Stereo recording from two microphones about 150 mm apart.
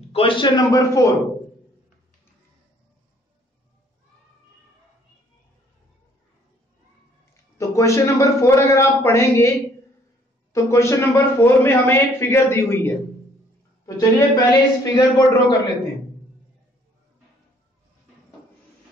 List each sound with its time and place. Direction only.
0.1 s a man's voice: 35° left (ahead or behind)
7.5 s a man's voice: 20° left (ahead or behind)